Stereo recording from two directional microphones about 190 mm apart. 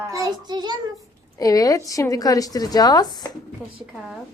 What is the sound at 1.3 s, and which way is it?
A woman's voice, 20° left (ahead or behind).